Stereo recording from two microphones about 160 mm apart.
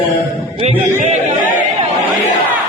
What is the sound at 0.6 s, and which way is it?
Speech, 45° right (ahead or behind).